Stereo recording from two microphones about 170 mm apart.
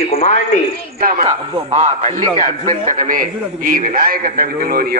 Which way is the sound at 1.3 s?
40° right (ahead or behind).